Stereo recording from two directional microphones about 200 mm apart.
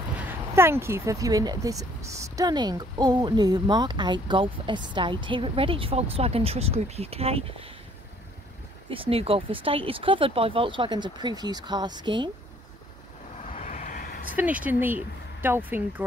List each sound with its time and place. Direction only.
0.2 s speech: 10° right (ahead or behind); by 7.4 s 30° right (ahead or behind)
8.9 s speech: 30° right (ahead or behind)
13.5 s vehicle: 40° left (ahead or behind)
14.3 s speech: 10° right (ahead or behind)